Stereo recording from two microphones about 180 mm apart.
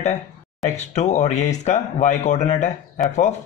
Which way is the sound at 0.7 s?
40° left (ahead or behind).